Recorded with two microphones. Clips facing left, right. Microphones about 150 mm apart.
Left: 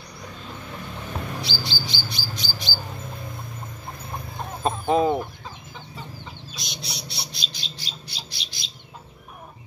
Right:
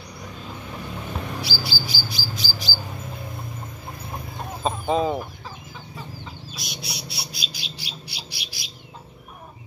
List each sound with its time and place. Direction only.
1.4 s chirp: 5° right (ahead or behind)
4.6 s chicken: centre (ahead or behind)
6.5 s bird: 5° right (ahead or behind)